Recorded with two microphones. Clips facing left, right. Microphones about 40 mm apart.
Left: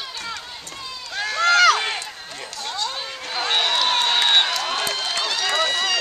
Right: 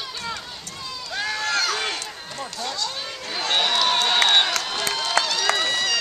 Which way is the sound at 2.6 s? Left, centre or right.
Centre.